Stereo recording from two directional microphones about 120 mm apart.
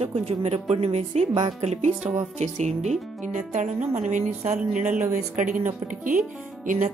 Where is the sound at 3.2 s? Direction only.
90° right.